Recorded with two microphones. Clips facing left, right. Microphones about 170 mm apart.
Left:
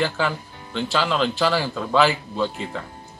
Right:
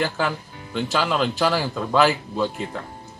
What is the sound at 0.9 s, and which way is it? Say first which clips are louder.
A man's voice: even; 5° right (ahead or behind).